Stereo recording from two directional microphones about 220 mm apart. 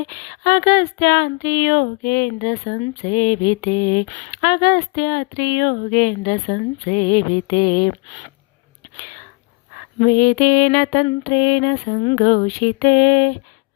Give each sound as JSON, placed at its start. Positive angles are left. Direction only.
{"t": 0.1, "sound": "speech", "side_deg": 40}
{"t": 10.0, "sound": "speech", "side_deg": 45}